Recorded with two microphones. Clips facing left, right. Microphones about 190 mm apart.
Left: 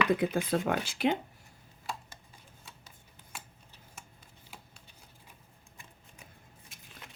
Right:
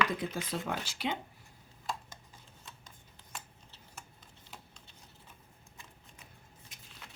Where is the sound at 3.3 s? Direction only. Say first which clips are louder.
Right 1 dB; 5° left (ahead or behind).